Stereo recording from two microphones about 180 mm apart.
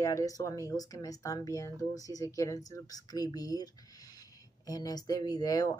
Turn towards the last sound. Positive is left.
turn(degrees=20)  # may be behind; listen again after turning